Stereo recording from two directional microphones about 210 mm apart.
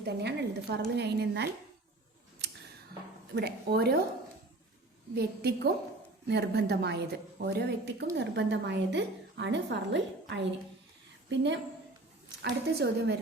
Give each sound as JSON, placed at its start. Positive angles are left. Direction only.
{"t": 0.0, "sound": "a woman's voice", "side_deg": -50}
{"t": 3.3, "sound": "a woman's voice", "side_deg": -50}
{"t": 5.1, "sound": "a woman's voice", "side_deg": -50}